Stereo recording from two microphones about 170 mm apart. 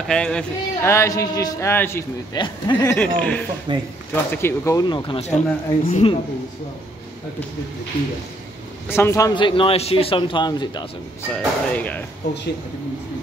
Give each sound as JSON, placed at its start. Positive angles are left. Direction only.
{"t": 0.1, "sound": "speech", "side_deg": 5}
{"t": 0.9, "sound": "a man's voice", "side_deg": 20}
{"t": 2.3, "sound": "a man's voice", "side_deg": 25}
{"t": 3.2, "sound": "a man's voice", "side_deg": 10}
{"t": 3.7, "sound": "speech", "side_deg": -25}
{"t": 4.1, "sound": "a man's voice", "side_deg": 15}
{"t": 8.8, "sound": "a man's voice", "side_deg": 15}
{"t": 11.3, "sound": "a man's voice", "side_deg": 10}